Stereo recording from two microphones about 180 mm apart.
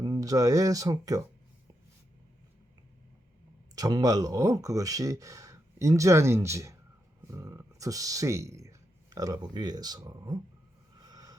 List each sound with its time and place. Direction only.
0.0 s speech: 20° right (ahead or behind)
3.8 s speech: 20° right (ahead or behind)
11.0 s vehicle: 20° right (ahead or behind)